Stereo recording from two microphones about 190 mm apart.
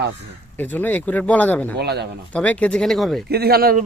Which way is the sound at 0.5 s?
10° left (ahead or behind).